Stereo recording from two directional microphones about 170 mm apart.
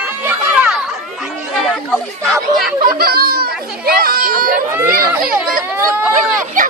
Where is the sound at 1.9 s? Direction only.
Centre (ahead or behind).